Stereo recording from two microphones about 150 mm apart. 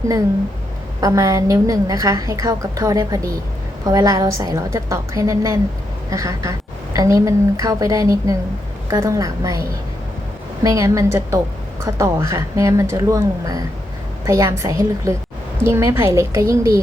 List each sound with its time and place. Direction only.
1.0 s a woman's voice: 20° right (ahead or behind)
10.6 s a woman's voice: 20° right (ahead or behind)